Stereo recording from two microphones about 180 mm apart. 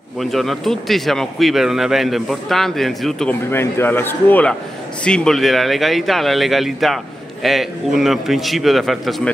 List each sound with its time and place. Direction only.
0.2 s speech: centre (ahead or behind)